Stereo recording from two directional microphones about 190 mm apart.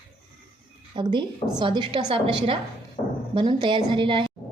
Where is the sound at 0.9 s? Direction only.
25° right (ahead or behind).